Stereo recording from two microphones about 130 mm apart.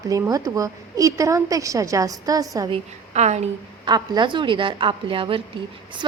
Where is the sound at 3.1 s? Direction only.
60° right (ahead or behind).